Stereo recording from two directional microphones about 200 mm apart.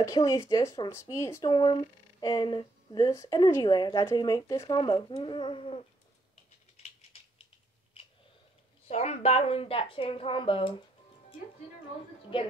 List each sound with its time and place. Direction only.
0.0 s speech: 15° left (ahead or behind)
6.8 s typing: 30° left (ahead or behind)
8.8 s speech: 35° left (ahead or behind)